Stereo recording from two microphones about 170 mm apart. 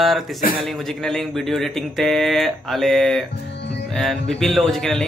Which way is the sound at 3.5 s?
90° left.